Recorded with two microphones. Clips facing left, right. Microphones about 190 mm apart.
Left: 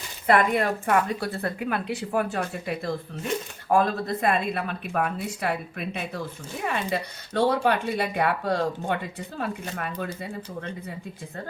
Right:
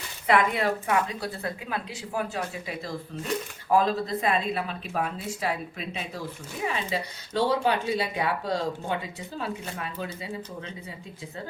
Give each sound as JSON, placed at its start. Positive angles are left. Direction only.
{"t": 0.3, "sound": "speech", "side_deg": 50}